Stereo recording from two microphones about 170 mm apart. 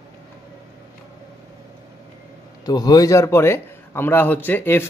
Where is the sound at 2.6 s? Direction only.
25° left (ahead or behind).